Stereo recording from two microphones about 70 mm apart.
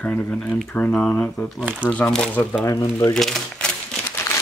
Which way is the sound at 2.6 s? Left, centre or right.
Left.